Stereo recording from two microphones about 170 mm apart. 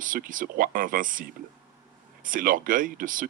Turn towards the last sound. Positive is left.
turn(degrees=-55)  # may be behind; listen again after turning